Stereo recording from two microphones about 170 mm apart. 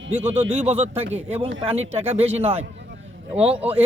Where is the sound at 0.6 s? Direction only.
40° right (ahead or behind).